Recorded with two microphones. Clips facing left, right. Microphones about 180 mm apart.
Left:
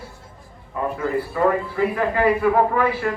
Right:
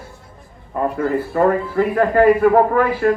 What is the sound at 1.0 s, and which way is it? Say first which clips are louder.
A man's voice: right 3 dB; 45° right (ahead or behind).